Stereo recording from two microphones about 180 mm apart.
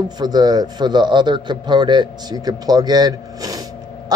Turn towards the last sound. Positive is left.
turn(degrees=-20)  # may be behind; listen again after turning